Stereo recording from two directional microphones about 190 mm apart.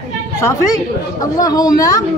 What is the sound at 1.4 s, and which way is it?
Speech, 20° left (ahead or behind).